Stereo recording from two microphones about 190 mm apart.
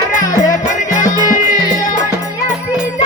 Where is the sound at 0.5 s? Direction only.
40° left (ahead or behind).